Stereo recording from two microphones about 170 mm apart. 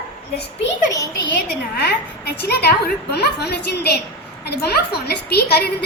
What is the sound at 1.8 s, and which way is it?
A woman's voice, 70° left (ahead or behind).